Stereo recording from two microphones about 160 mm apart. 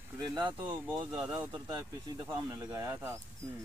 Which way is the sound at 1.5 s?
30° right (ahead or behind).